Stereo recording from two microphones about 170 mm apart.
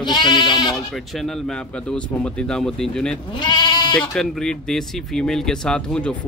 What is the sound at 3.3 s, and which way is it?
Speech, 25° left (ahead or behind).